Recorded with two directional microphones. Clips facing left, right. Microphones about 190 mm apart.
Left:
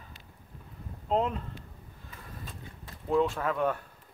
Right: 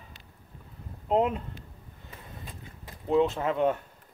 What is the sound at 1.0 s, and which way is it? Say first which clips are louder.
Speech: right 3 dB; 15° right (ahead or behind).